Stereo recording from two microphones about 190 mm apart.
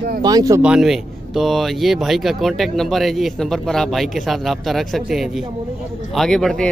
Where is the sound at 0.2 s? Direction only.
20° right (ahead or behind).